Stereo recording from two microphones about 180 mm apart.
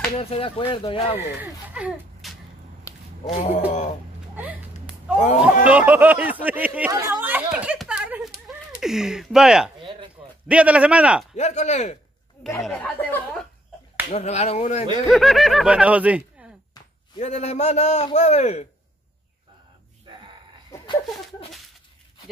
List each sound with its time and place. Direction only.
0.2 s a man's voice: 30° left (ahead or behind)
1.4 s speech: 5° right (ahead or behind)
3.4 s a man's voice: 35° left (ahead or behind)
4.4 s a sound: 5° right (ahead or behind)
5.4 s speech: 10° right (ahead or behind)
6.9 s a sound: 15° right (ahead or behind)
10.5 s speech: 5° right (ahead or behind)
11.3 s a man's voice: 40° left (ahead or behind)
12.5 s speech: 5° left (ahead or behind)
14.1 s a man's voice: 40° left (ahead or behind)
15.0 s speech: centre (ahead or behind)
17.2 s a man's voice: 40° left (ahead or behind)
20.7 s a sound: 25° left (ahead or behind)